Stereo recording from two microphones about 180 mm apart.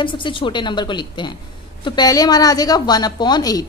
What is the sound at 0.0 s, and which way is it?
A woman's voice, 25° left (ahead or behind).